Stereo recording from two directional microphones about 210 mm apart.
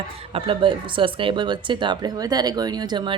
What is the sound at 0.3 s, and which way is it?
A woman's voice, 25° right (ahead or behind).